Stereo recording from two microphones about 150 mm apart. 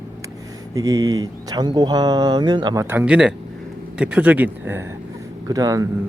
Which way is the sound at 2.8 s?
10° right (ahead or behind).